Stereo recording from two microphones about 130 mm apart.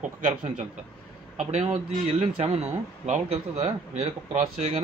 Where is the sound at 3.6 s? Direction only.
60° right (ahead or behind).